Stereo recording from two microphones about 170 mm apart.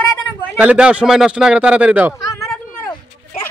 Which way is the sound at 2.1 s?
20° left (ahead or behind).